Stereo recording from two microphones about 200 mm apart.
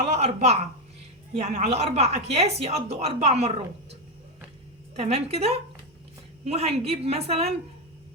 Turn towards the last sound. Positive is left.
turn(degrees=-30)  # may be behind; listen again after turning